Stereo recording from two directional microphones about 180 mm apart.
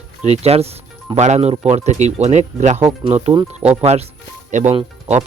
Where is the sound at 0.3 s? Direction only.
35° right (ahead or behind).